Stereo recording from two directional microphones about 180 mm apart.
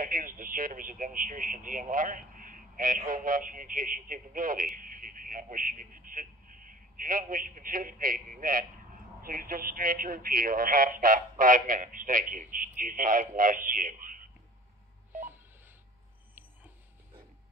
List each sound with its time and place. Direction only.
0.0 s speech: 50° right (ahead or behind)